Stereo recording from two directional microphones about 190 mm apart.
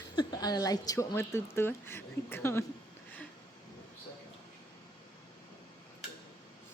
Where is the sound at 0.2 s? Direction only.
20° left (ahead or behind).